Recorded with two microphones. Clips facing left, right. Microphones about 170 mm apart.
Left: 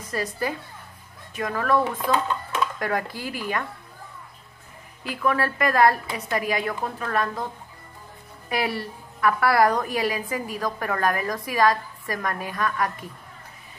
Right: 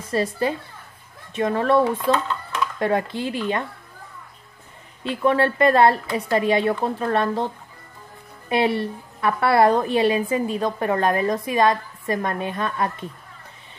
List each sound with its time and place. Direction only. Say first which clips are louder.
0.0 s a woman's voice: right 5 dB; 30° right (ahead or behind)
5.0 s a woman's voice: right 5 dB; 25° right (ahead or behind)